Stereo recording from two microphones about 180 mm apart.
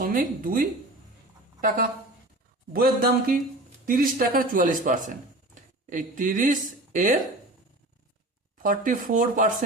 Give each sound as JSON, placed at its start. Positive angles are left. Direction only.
{"t": 0.0, "sound": "speech", "side_deg": -50}
{"t": 8.6, "sound": "speech", "side_deg": -50}